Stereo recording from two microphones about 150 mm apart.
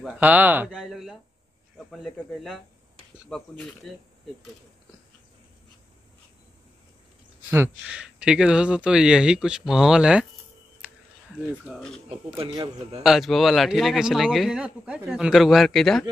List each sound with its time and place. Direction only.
0.1 s speech: 10° right (ahead or behind)
0.7 s a man's voice: centre (ahead or behind)
7.8 s a man's voice: 5° right (ahead or behind)
11.8 s a man's voice: 5° left (ahead or behind)
12.4 s speech: 40° right (ahead or behind)
13.0 s a man's voice: centre (ahead or behind)